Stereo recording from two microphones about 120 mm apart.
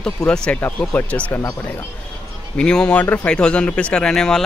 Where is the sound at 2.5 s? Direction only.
5° left (ahead or behind).